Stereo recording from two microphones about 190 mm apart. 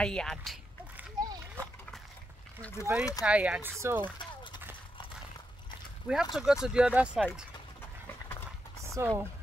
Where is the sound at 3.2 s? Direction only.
5° right (ahead or behind).